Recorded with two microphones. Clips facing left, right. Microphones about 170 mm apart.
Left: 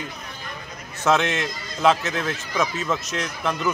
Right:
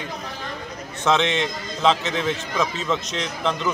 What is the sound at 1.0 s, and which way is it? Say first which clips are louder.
A man's voice: even; 5° left (ahead or behind).